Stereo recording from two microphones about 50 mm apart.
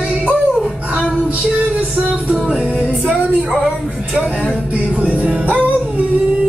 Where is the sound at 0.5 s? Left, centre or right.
Centre.